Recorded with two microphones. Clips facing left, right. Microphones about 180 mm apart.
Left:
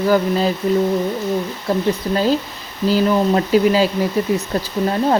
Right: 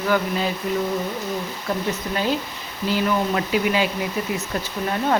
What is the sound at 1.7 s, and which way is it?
Speech, 30° left (ahead or behind).